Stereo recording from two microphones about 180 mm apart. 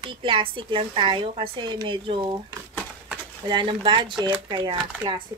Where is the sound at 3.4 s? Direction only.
25° right (ahead or behind).